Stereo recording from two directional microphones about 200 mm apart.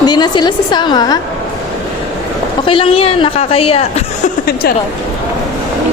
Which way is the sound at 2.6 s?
25° left (ahead or behind).